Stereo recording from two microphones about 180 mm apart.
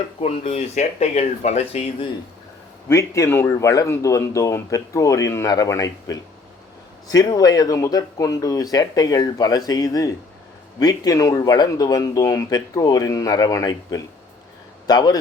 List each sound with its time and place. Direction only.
0.2 s speech: 35° left (ahead or behind)
2.9 s speech: 15° left (ahead or behind)